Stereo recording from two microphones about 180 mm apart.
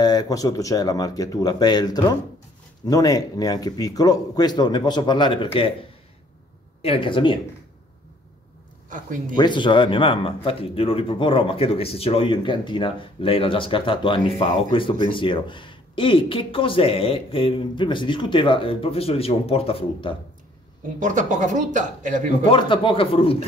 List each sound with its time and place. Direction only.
0.0 s speech: 20° left (ahead or behind)
6.8 s speech: 30° left (ahead or behind)
8.8 s speech: 45° right (ahead or behind)
9.4 s speech: 25° left (ahead or behind)
21.0 s speech: 45° right (ahead or behind)
22.5 s speech: 30° left (ahead or behind)